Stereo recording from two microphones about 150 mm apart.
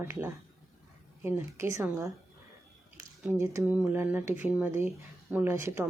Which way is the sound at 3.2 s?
15° right (ahead or behind).